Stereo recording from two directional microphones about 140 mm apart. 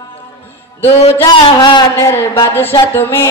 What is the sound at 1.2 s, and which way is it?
Speech, 30° left (ahead or behind).